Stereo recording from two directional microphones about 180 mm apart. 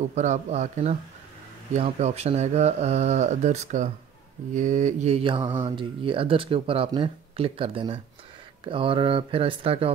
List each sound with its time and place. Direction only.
0.1 s speech: 40° right (ahead or behind)